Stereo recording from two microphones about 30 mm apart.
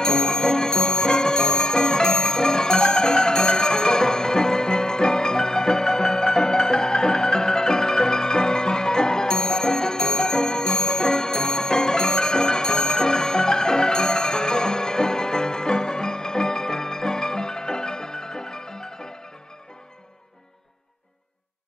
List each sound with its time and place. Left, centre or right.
0.0 s music: left